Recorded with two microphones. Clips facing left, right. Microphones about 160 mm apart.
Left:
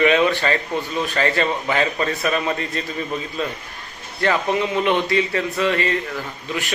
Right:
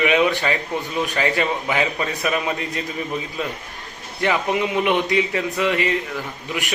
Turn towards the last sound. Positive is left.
turn(degrees=-15)  # may be behind; listen again after turning